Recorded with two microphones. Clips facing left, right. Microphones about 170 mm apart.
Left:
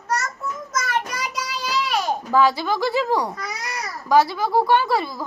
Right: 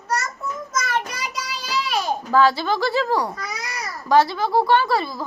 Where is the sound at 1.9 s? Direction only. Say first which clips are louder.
Even; 15° left (ahead or behind).